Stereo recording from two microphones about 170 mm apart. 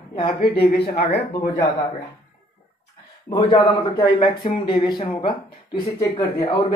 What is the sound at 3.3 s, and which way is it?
Speech, 25° left (ahead or behind).